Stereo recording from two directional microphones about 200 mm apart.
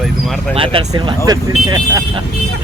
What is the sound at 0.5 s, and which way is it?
Speech, 25° right (ahead or behind).